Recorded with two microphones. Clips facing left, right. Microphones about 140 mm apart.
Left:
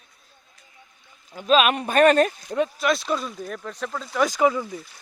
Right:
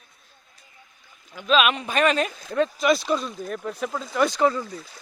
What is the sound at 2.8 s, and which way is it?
Speech, centre (ahead or behind).